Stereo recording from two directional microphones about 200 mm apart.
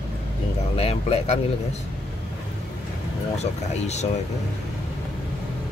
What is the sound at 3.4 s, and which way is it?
Speech, 35° left (ahead or behind).